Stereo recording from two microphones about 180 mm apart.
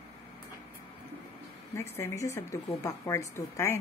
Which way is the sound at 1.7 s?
15° left (ahead or behind).